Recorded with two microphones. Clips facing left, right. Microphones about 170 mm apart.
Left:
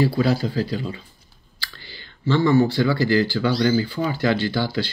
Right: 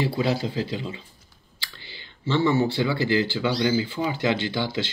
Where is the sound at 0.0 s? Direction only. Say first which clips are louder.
Left 4 dB; 20° right (ahead or behind).